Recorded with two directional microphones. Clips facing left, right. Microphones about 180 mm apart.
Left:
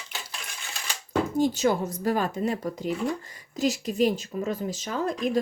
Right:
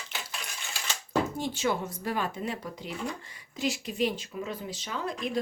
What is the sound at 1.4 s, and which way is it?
Speech, 40° left (ahead or behind).